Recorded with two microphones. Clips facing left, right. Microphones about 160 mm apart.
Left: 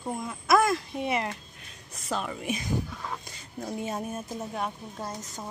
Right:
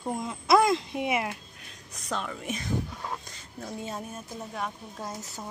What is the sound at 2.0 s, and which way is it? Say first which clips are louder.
Speech: left 2 dB; 10° left (ahead or behind).